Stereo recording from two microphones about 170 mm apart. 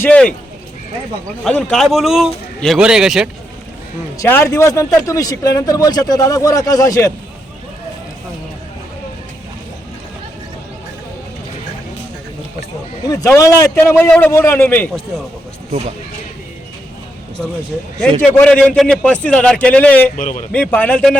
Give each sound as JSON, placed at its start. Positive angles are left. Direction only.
{"t": 0.0, "sound": "a man's voice", "side_deg": 5}
{"t": 1.5, "sound": "a man's voice", "side_deg": 5}
{"t": 4.2, "sound": "speech", "side_deg": 15}
{"t": 13.1, "sound": "a man's voice", "side_deg": 20}
{"t": 18.2, "sound": "a man's voice", "side_deg": 5}
{"t": 20.1, "sound": "a man's voice", "side_deg": 50}
{"t": 20.5, "sound": "a man's voice", "side_deg": 10}